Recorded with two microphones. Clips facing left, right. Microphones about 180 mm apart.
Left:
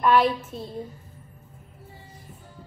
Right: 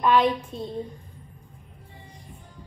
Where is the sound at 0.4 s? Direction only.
5° left (ahead or behind).